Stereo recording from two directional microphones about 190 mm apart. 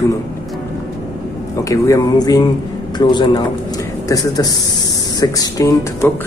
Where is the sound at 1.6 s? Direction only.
15° left (ahead or behind).